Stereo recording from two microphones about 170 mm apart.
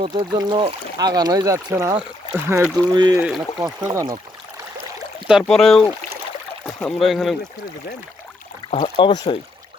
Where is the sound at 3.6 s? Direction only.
20° right (ahead or behind).